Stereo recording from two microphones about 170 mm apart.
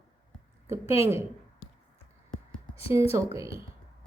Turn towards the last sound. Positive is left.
turn(degrees=-15)  # may be behind; listen again after turning